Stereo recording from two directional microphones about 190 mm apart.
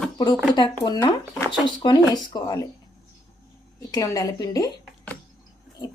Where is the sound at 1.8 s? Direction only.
20° left (ahead or behind).